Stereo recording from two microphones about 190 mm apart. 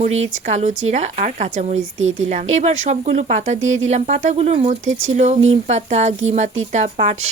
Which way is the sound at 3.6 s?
90° right.